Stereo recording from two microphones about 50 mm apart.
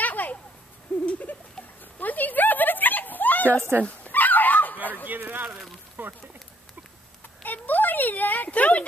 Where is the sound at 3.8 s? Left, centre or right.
Left.